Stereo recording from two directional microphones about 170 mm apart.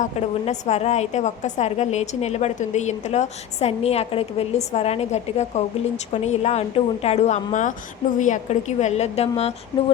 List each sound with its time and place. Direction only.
0.0 s a woman's voice: 40° left (ahead or behind)